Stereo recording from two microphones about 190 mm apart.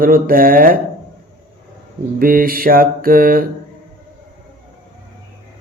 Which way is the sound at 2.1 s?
50° right (ahead or behind).